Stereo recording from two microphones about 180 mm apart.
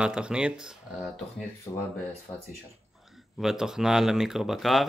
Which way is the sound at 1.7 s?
20° left (ahead or behind).